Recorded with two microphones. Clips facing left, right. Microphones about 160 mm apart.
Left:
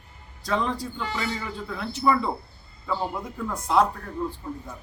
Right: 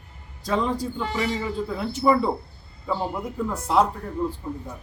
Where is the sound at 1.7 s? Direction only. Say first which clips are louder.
Right 2 dB; 25° right (ahead or behind).